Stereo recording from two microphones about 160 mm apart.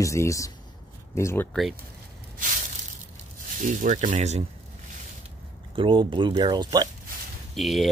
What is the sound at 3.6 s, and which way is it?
Speech, 55° right (ahead or behind).